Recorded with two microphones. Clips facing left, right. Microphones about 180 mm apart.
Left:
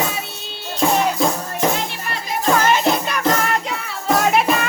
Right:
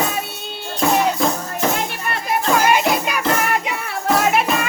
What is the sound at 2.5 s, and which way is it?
Music, 10° right (ahead or behind).